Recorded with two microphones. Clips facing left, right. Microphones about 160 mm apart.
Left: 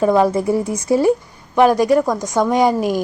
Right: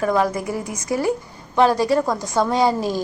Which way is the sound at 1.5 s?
15° left (ahead or behind).